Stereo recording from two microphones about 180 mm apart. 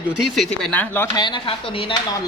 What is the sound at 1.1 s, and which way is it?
Speech, 25° left (ahead or behind).